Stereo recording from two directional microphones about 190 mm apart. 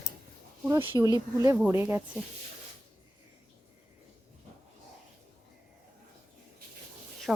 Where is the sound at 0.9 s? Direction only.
20° right (ahead or behind).